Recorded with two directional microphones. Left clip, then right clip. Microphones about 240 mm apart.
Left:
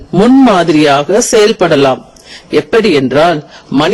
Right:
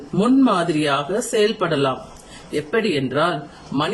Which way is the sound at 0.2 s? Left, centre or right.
Left.